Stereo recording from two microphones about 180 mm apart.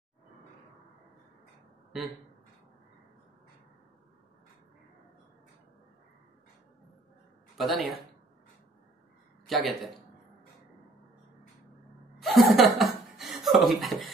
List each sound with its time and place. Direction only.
7.5 s a man's voice: centre (ahead or behind)
9.5 s speech: centre (ahead or behind)
12.2 s chuckle: centre (ahead or behind)
13.7 s speech: centre (ahead or behind)